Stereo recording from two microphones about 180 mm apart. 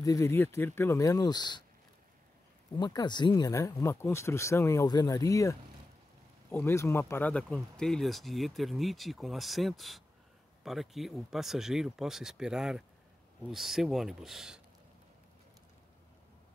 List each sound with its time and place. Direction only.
0.0 s speech: 15° left (ahead or behind)
2.8 s speech: 25° left (ahead or behind); by 14.6 s centre (ahead or behind)